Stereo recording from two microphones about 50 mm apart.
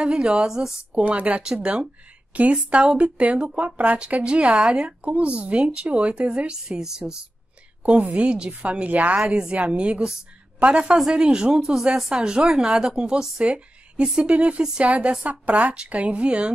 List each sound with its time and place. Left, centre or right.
0.0 s a woman's voice: centre
1.0 s a woman's voice: right
7.8 s a woman's voice: right